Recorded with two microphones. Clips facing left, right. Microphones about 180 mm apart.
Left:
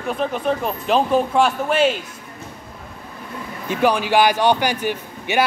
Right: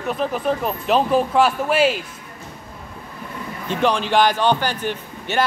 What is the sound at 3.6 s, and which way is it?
Speech, 10° left (ahead or behind).